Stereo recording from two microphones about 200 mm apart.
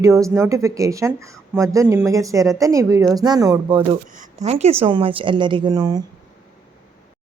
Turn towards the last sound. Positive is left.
turn(degrees=-20)  # may be behind; listen again after turning